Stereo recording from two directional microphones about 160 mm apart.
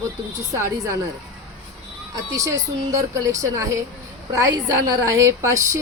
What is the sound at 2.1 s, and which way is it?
A woman's voice, 20° right (ahead or behind).